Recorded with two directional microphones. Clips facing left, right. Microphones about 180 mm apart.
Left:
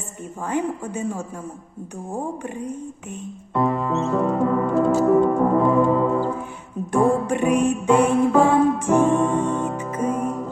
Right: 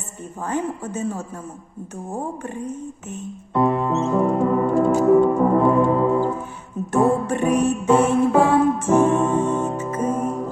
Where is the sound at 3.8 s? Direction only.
20° right (ahead or behind).